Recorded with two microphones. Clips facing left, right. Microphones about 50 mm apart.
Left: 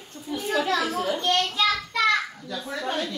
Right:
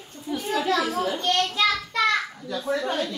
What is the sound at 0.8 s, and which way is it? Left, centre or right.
Speech, centre.